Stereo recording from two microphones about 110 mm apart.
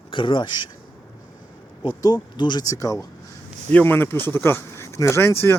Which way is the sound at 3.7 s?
20° left (ahead or behind).